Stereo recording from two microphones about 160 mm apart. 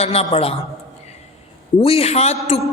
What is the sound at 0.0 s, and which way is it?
Speech, 40° left (ahead or behind).